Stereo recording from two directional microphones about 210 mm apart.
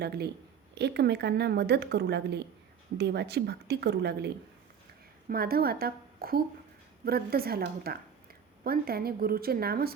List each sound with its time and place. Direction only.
0.0 s speech: 50° right (ahead or behind)
5.3 s speech: 45° right (ahead or behind)